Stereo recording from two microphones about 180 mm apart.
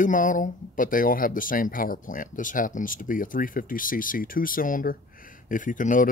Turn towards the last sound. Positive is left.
turn(degrees=45)  # may be behind; listen again after turning